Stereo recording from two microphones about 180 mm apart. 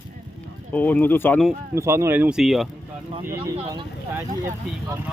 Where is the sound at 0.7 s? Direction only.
10° left (ahead or behind).